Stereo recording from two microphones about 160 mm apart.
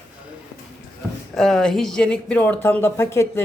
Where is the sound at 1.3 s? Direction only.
Centre (ahead or behind).